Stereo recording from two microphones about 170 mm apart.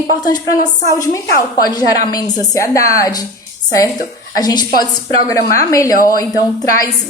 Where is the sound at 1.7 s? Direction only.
20° left (ahead or behind).